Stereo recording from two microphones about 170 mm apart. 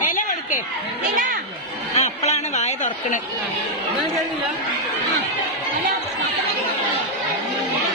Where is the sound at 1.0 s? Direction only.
50° right (ahead or behind).